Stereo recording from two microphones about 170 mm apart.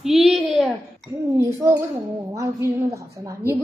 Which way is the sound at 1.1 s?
15° right (ahead or behind).